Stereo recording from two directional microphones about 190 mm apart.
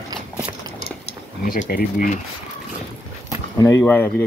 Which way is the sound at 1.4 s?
50° left (ahead or behind).